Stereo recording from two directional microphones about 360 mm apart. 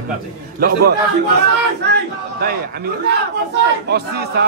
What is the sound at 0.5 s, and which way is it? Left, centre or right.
Speech, right.